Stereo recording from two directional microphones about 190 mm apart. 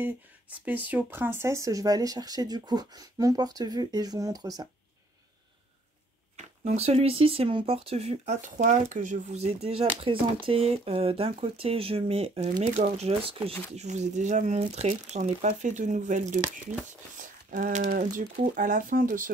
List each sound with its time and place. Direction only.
0.0 s speech: 10° right (ahead or behind)
6.3 s speech: 35° right (ahead or behind)